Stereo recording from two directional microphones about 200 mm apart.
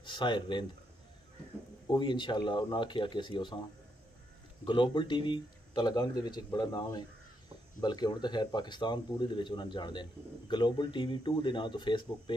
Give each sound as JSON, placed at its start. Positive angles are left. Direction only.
{"t": 0.0, "sound": "speech", "side_deg": 25}
{"t": 1.9, "sound": "speech", "side_deg": 25}
{"t": 4.6, "sound": "speech", "side_deg": 25}